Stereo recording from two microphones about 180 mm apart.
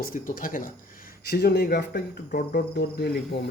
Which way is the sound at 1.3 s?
65° left (ahead or behind).